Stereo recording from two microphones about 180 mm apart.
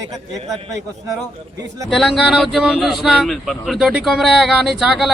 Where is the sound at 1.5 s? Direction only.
20° right (ahead or behind).